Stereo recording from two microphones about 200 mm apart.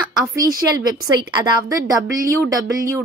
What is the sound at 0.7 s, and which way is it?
A woman's voice, 20° right (ahead or behind).